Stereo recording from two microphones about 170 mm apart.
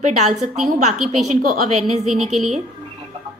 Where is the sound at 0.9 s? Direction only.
Centre (ahead or behind).